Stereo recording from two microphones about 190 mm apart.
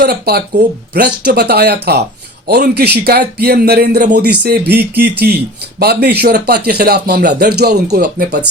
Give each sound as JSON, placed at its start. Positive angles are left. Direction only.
{"t": 0.0, "sound": "speech", "side_deg": -55}